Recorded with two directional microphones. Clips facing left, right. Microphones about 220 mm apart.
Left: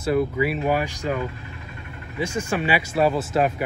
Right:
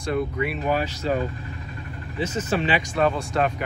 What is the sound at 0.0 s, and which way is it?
Speech, 5° left (ahead or behind).